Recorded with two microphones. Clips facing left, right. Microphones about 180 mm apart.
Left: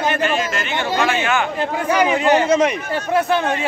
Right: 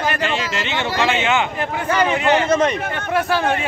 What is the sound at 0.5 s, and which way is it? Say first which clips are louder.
Speech: left 1 dB; 20° right (ahead or behind).